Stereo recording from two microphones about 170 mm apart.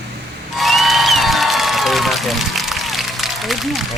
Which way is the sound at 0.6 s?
Centre (ahead or behind).